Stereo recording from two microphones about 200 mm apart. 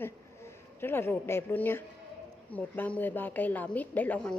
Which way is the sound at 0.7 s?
10° left (ahead or behind).